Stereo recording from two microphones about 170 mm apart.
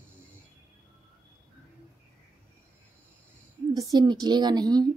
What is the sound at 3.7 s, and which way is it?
A woman's voice, 20° right (ahead or behind).